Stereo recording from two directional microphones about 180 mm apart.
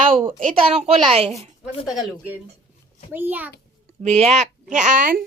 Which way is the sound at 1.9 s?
5° right (ahead or behind).